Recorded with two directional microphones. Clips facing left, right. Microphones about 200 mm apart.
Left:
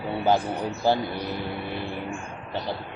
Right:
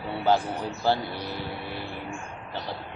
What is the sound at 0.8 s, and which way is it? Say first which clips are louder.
Speech: left 2 dB; 15° left (ahead or behind).